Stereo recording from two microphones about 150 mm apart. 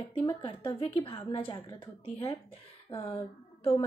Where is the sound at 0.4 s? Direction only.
40° left (ahead or behind).